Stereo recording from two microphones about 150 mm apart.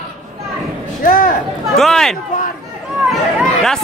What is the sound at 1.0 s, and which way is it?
Speech, 60° left (ahead or behind).